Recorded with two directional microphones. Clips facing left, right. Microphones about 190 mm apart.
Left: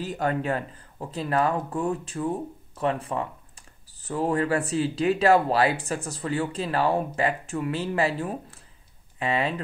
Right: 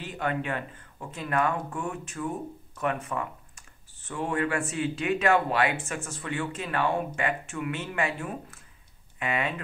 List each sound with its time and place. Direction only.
0.0 s speech: 40° left (ahead or behind)